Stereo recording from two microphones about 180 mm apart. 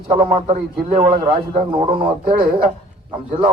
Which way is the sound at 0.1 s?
40° right (ahead or behind).